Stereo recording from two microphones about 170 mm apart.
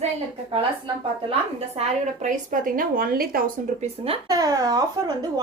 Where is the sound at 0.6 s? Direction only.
35° right (ahead or behind).